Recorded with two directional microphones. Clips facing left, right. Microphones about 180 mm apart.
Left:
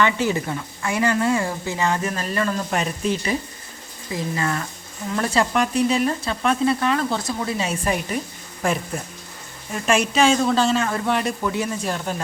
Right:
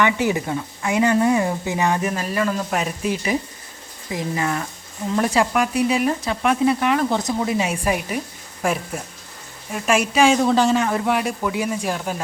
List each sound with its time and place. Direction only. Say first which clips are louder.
0.0 s a woman's voice: right 1 dB; 15° right (ahead or behind)